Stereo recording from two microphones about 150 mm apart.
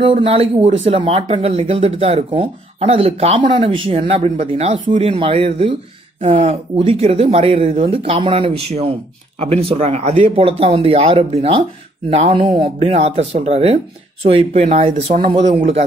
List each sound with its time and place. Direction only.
0.0 s speech: 40° right (ahead or behind)